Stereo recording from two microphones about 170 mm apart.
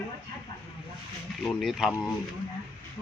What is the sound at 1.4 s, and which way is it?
Speech, centre (ahead or behind).